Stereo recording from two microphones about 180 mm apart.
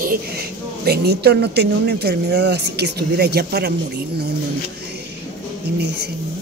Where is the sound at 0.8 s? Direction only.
65° right (ahead or behind).